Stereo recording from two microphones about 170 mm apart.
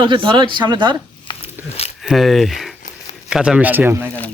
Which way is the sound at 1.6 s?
10° right (ahead or behind).